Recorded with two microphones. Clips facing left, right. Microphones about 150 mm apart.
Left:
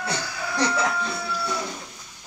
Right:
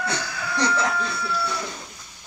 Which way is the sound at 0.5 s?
10° left (ahead or behind).